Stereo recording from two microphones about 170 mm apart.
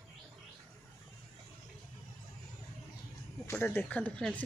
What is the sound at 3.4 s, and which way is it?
Speech, 10° left (ahead or behind).